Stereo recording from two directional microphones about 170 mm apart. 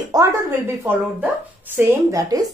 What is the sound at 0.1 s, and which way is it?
Speech, 20° right (ahead or behind).